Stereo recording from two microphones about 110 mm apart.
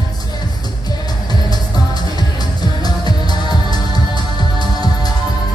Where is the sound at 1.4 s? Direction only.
40° left (ahead or behind).